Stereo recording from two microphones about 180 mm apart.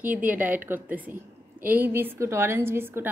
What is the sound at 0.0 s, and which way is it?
A woman's voice, 10° right (ahead or behind).